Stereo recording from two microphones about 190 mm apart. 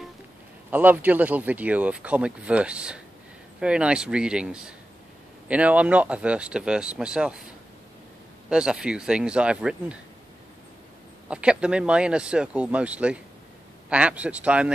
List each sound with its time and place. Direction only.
0.7 s speech: 10° right (ahead or behind)
8.5 s speech: 5° right (ahead or behind)
11.2 s speech: 5° right (ahead or behind)